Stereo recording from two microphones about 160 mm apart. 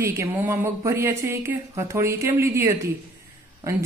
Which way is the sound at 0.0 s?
15° right (ahead or behind).